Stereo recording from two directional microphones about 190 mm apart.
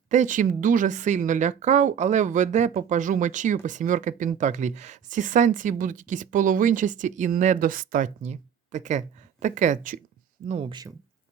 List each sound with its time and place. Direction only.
0.1 s speech: 40° right (ahead or behind)
10.7 s speech: 20° right (ahead or behind)